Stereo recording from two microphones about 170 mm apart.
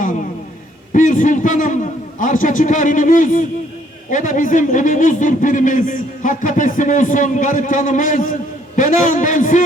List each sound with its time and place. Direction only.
0.9 s speech: 50° left (ahead or behind)